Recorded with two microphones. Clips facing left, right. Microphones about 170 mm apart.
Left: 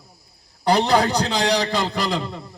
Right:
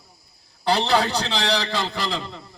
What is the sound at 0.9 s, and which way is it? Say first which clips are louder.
A man's voice: left 3 dB; 15° left (ahead or behind).